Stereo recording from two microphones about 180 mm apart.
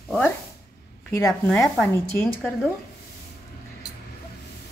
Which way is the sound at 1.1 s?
15° left (ahead or behind).